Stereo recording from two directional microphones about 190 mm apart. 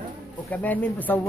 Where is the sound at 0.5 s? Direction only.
10° left (ahead or behind).